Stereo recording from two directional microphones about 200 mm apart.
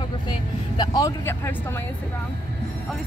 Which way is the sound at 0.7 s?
20° left (ahead or behind).